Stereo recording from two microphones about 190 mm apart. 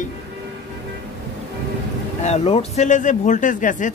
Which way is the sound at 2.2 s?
35° left (ahead or behind).